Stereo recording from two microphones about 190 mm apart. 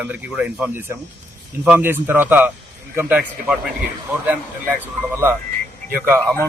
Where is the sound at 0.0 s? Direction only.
10° right (ahead or behind).